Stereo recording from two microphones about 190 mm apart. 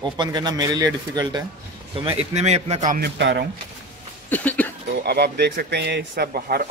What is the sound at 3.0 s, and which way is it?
Speech, 65° right (ahead or behind).